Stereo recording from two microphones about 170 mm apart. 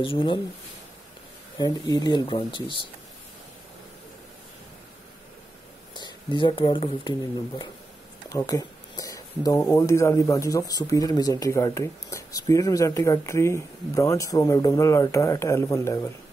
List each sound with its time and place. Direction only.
0.0 s speech: 30° left (ahead or behind)
1.6 s speech: 25° left (ahead or behind)
5.9 s speech: 30° left (ahead or behind)
8.3 s speech: 20° left (ahead or behind)